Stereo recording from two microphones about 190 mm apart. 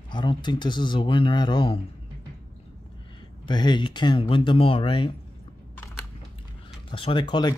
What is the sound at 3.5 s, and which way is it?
Speech, 25° left (ahead or behind).